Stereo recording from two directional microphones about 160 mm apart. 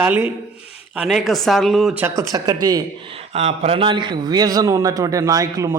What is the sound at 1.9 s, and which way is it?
Speech, 20° right (ahead or behind).